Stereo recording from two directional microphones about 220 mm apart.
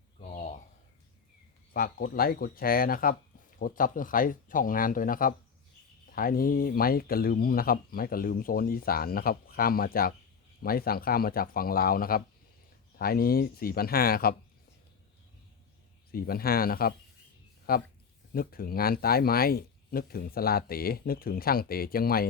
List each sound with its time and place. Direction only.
1.7 s speech: 40° left (ahead or behind)
16.1 s speech: 45° left (ahead or behind)